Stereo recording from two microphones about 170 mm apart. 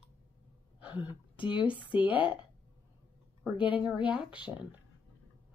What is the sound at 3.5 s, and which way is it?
Speech, 30° left (ahead or behind).